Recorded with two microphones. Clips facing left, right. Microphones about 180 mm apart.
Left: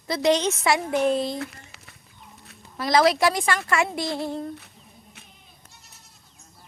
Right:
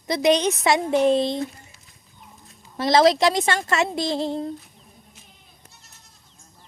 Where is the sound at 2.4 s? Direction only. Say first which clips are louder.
Left 2 dB; 70° left (ahead or behind).